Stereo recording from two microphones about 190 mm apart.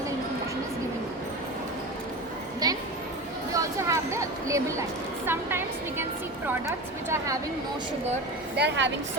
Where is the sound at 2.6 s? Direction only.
20° right (ahead or behind).